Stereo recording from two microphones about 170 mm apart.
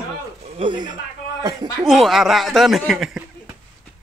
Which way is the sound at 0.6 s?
30° right (ahead or behind).